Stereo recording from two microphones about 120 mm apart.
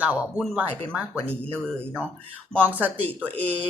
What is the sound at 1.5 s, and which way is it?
Speech, 10° left (ahead or behind).